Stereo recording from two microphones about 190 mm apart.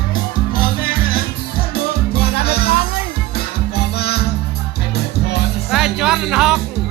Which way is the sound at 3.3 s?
55° left (ahead or behind).